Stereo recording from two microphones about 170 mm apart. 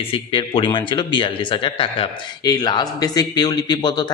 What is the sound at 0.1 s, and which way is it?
Speech, 30° left (ahead or behind).